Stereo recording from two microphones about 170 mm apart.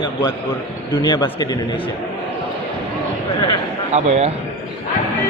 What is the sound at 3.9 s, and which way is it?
Speech, 40° right (ahead or behind).